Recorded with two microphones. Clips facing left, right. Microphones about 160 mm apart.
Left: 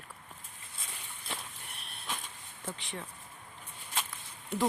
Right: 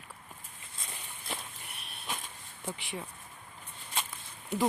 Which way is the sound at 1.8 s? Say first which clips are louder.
Right 1 dB; 5° right (ahead or behind).